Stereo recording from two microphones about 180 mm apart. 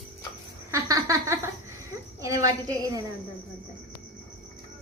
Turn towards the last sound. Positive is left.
turn(degrees=-20)  # may be behind; listen again after turning